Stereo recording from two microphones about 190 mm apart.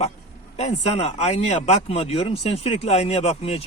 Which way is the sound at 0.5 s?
35° left (ahead or behind).